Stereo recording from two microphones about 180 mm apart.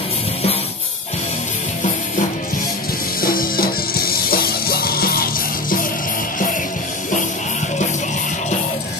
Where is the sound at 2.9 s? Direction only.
55° left (ahead or behind).